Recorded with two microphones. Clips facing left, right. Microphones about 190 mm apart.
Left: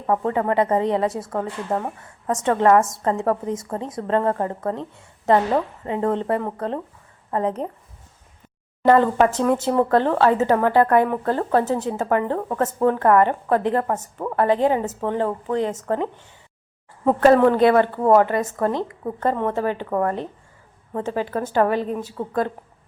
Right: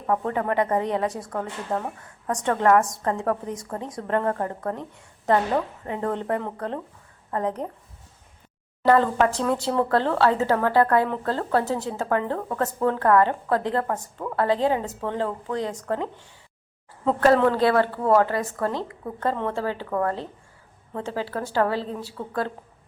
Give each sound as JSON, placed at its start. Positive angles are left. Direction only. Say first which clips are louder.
{"t": 0.1, "sound": "a woman's voice", "louder": "left 3 dB", "side_deg": 15}
{"t": 8.8, "sound": "a woman's voice", "louder": "left 3 dB", "side_deg": 20}